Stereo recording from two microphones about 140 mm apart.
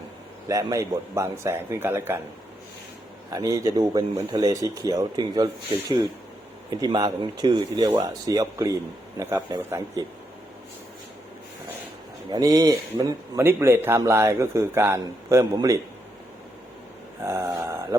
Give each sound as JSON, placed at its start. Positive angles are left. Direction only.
{"t": 0.4, "sound": "speech", "side_deg": -25}
{"t": 3.2, "sound": "speech", "side_deg": -25}
{"t": 6.7, "sound": "speech", "side_deg": -25}
{"t": 12.3, "sound": "speech", "side_deg": -25}
{"t": 17.2, "sound": "speech", "side_deg": -20}